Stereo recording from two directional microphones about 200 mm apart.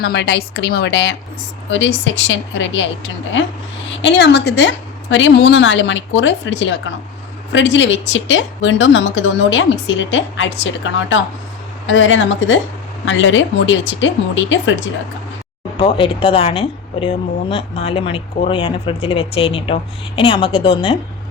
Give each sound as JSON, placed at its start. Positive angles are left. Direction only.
{"t": 0.0, "sound": "a woman's voice", "side_deg": 55}
{"t": 4.0, "sound": "a woman's voice", "side_deg": 60}
{"t": 15.8, "sound": "speech", "side_deg": 30}